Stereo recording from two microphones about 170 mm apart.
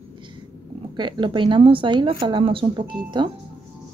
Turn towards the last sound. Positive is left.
turn(degrees=-25)  # may be behind; listen again after turning